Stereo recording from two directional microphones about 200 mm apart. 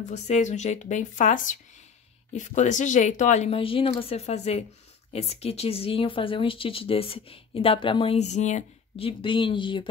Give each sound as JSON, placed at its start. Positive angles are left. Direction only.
{"t": 0.0, "sound": "speech", "side_deg": 35}